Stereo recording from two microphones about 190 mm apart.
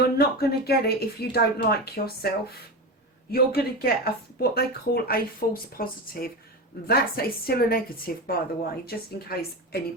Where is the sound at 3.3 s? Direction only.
55° left (ahead or behind).